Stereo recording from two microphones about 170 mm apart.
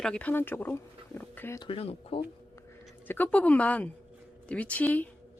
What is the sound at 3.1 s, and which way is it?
Speech, 10° left (ahead or behind).